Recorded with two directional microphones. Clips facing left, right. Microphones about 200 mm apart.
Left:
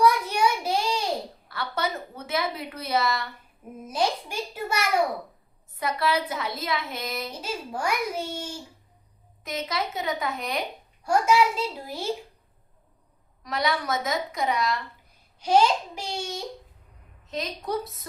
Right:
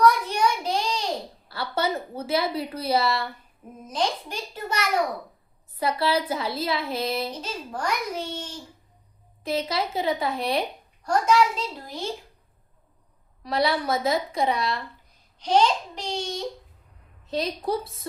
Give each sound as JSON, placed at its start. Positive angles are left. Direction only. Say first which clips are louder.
{"t": 0.0, "sound": "child singing", "louder": "right 1 dB", "side_deg": 10}
{"t": 1.5, "sound": "a woman's voice", "louder": "right 4 dB", "side_deg": -30}
{"t": 3.8, "sound": "a child's voice", "louder": "left 1 dB", "side_deg": 10}
{"t": 5.8, "sound": "a woman's voice", "louder": "right 2 dB", "side_deg": -30}
{"t": 7.4, "sound": "a child's voice", "louder": "left 1 dB", "side_deg": 10}
{"t": 9.4, "sound": "a woman's voice", "louder": "right 4 dB", "side_deg": -30}
{"t": 11.0, "sound": "a child's voice", "louder": "even", "side_deg": 10}
{"t": 13.4, "sound": "a woman's voice", "louder": "right 3 dB", "side_deg": -30}
{"t": 15.4, "sound": "a child's voice", "louder": "even", "side_deg": 10}
{"t": 17.2, "sound": "a woman's voice", "louder": "right 4 dB", "side_deg": -35}